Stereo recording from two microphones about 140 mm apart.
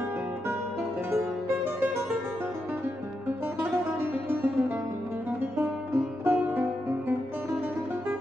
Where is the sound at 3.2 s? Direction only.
15° right (ahead or behind).